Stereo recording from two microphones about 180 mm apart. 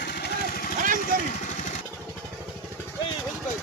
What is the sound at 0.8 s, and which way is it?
Vehicle, 50° right (ahead or behind).